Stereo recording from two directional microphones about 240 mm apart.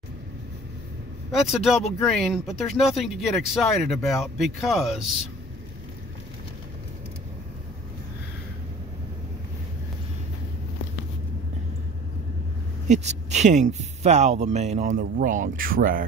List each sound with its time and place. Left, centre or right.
1.5 s speech: centre
12.8 s speech: right